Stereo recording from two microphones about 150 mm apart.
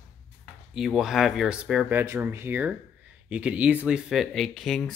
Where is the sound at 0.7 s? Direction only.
Centre (ahead or behind).